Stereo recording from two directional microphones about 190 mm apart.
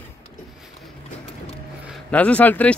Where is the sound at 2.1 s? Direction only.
5° left (ahead or behind).